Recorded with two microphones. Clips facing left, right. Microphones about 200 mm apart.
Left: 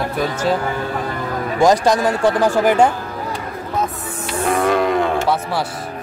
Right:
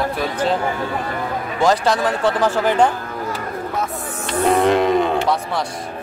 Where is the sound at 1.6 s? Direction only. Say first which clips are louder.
Left 3 dB; 15° left (ahead or behind).